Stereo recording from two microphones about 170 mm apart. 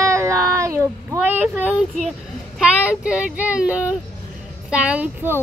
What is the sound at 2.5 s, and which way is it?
A child's voice, 5° right (ahead or behind).